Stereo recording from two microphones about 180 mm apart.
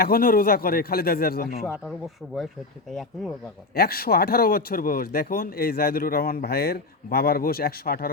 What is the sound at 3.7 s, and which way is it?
Speech, 60° left (ahead or behind).